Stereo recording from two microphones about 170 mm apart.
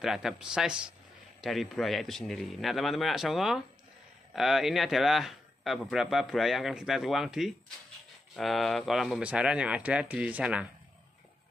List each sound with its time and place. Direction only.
0.0 s speech: centre (ahead or behind)